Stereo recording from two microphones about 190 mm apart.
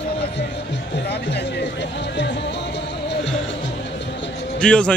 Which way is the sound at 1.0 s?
60° left (ahead or behind).